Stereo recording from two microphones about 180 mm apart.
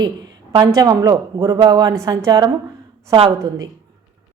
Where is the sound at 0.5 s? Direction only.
20° right (ahead or behind).